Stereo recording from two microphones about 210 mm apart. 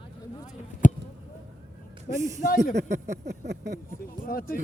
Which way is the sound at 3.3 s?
55° right (ahead or behind).